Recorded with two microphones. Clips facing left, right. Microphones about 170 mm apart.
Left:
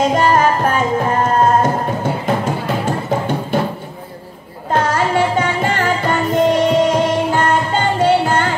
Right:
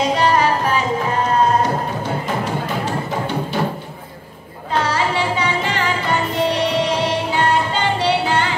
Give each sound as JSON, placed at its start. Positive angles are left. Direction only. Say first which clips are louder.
{"t": 0.0, "sound": "music", "louder": "left 3 dB", "side_deg": 45}
{"t": 4.6, "sound": "music", "louder": "left 3 dB", "side_deg": 50}